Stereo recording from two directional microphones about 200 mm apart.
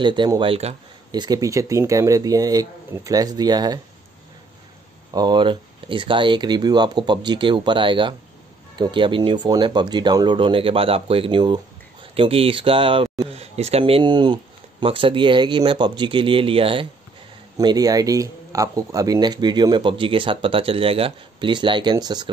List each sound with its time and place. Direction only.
0.0 s speech: 25° right (ahead or behind)
5.1 s speech: 20° right (ahead or behind)